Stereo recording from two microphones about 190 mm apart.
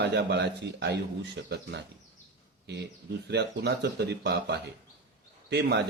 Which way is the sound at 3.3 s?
60° right (ahead or behind).